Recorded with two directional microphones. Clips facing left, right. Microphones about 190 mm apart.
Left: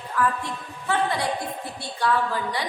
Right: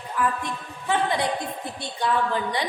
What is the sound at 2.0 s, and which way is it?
Speech, 20° right (ahead or behind).